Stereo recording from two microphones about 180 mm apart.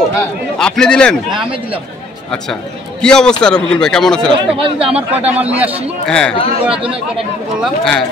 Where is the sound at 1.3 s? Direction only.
30° right (ahead or behind).